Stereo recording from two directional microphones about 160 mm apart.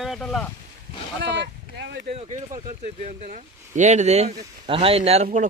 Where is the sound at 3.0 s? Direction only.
50° right (ahead or behind).